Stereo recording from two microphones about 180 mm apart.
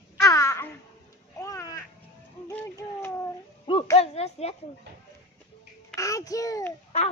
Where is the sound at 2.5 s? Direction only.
10° left (ahead or behind).